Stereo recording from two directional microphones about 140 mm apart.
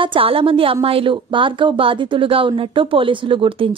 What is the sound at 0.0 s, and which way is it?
A woman's voice, 40° right (ahead or behind).